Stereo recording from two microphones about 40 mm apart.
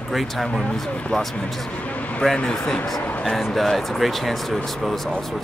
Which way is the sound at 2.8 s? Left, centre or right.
Centre.